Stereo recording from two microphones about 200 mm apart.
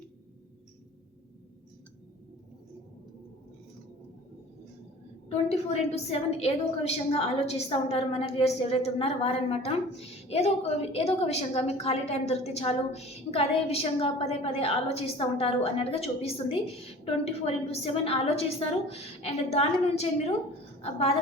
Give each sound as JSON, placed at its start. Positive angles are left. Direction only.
{"t": 5.3, "sound": "a woman's voice", "side_deg": 30}